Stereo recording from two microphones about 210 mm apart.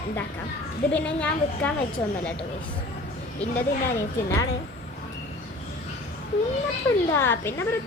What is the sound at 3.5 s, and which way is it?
Speech, 10° left (ahead or behind).